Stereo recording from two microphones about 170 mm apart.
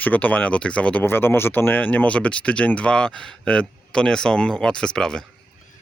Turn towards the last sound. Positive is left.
turn(degrees=5)  # may be behind; listen again after turning